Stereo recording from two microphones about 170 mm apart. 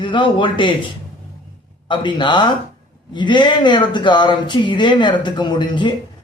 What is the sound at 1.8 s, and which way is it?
Speech, 30° left (ahead or behind).